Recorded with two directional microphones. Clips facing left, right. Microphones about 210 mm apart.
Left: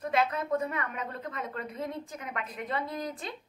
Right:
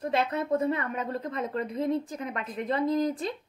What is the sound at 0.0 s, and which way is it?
A woman's voice, 30° right (ahead or behind).